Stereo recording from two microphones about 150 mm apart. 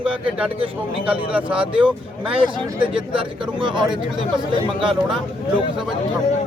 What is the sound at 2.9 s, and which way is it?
Speech, 35° right (ahead or behind).